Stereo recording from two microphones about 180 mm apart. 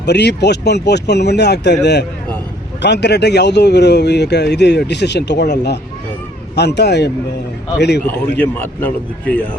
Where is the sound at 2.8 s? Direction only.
70° left (ahead or behind).